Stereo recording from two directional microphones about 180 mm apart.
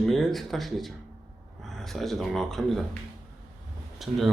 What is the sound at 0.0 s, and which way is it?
Speech, centre (ahead or behind).